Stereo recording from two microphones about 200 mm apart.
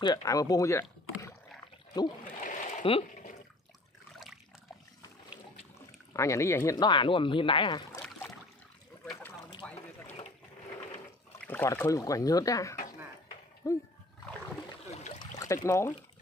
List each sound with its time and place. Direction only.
0.0 s speech: 20° left (ahead or behind)
2.4 s a sound: 40° left (ahead or behind)
2.8 s speech: 25° left (ahead or behind)
6.1 s speech: 15° left (ahead or behind)
8.0 s boat: 10° left (ahead or behind)
9.6 s a sound: 5° left (ahead or behind)
11.4 s speech: 10° left (ahead or behind)
15.3 s speech: 15° left (ahead or behind)